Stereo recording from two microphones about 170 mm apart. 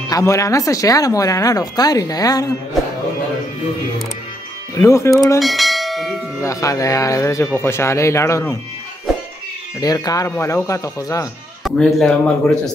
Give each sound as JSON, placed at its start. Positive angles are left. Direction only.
{"t": 0.1, "sound": "speech", "side_deg": 20}
{"t": 4.7, "sound": "speech", "side_deg": 15}
{"t": 5.4, "sound": "church bell", "side_deg": 0}
{"t": 6.4, "sound": "speech", "side_deg": 20}
{"t": 9.8, "sound": "speech", "side_deg": 20}
{"t": 11.6, "sound": "speech", "side_deg": 5}